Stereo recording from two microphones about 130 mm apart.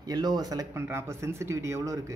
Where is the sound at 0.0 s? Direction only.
30° right (ahead or behind).